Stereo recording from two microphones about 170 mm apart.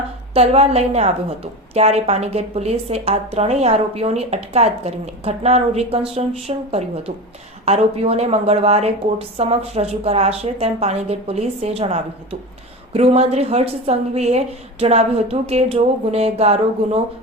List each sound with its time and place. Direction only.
0.3 s a woman's voice: 40° right (ahead or behind)